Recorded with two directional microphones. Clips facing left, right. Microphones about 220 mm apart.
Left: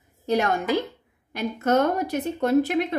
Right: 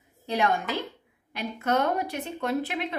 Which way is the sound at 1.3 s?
45° left (ahead or behind).